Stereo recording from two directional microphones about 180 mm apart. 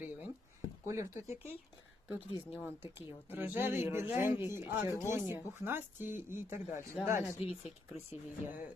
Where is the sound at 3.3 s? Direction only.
10° right (ahead or behind).